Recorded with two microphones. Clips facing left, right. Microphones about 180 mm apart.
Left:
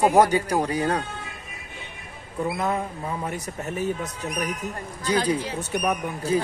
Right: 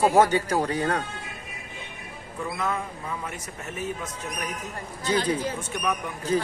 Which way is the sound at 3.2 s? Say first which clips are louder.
Left 6 dB; 35° left (ahead or behind).